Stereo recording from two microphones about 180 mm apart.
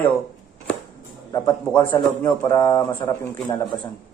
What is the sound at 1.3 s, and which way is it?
A man's voice, 20° left (ahead or behind).